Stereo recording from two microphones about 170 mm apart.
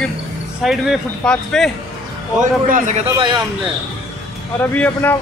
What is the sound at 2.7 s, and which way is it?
Speech, 45° right (ahead or behind).